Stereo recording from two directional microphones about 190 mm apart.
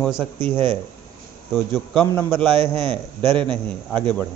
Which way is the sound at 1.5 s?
Centre (ahead or behind).